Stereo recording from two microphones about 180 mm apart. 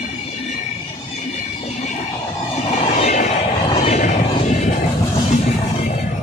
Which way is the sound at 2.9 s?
40° left (ahead or behind).